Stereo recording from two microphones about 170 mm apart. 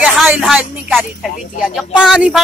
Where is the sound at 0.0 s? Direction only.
5° right (ahead or behind).